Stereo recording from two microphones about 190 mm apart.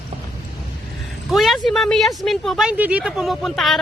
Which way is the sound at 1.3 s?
Centre (ahead or behind).